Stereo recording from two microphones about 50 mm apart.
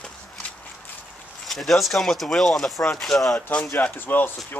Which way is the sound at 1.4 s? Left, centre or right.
Centre.